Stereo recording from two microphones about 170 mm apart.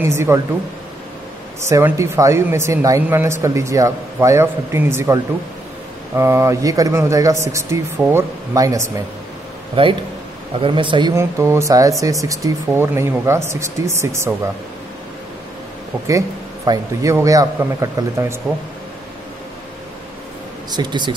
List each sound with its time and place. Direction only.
0.0 s speech: 15° right (ahead or behind)
1.7 s speech: 15° right (ahead or behind)
9.8 s a man's voice: 30° right (ahead or behind)
11.1 s speech: 15° right (ahead or behind)
16.1 s a man's voice: 20° right (ahead or behind)
18.4 s speech: 5° right (ahead or behind)
20.7 s a man's voice: 25° right (ahead or behind)